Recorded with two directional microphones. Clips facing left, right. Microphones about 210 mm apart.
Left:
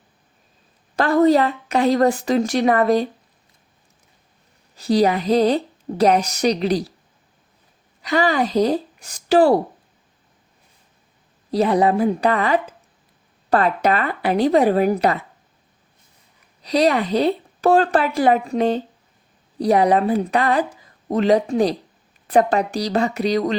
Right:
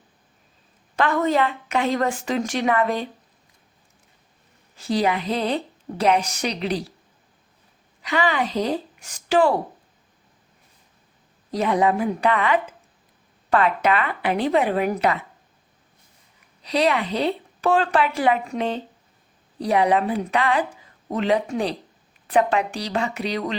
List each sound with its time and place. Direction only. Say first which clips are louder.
0.9 s speech: left 6 dB; 35° left (ahead or behind)
4.8 s a woman's voice: left 5 dB; 40° left (ahead or behind)
8.0 s a woman's voice: left 4 dB; 40° left (ahead or behind)
11.5 s a woman's voice: left 4 dB; 35° left (ahead or behind)
16.6 s a woman's voice: left 4 dB; 40° left (ahead or behind)